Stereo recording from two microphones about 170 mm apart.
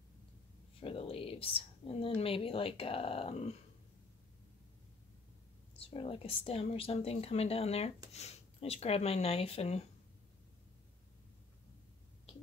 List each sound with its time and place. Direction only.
0.7 s speech: 35° left (ahead or behind)
5.8 s speech: 35° left (ahead or behind)